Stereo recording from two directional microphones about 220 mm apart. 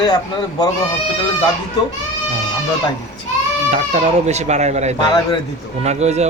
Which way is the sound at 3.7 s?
30° right (ahead or behind).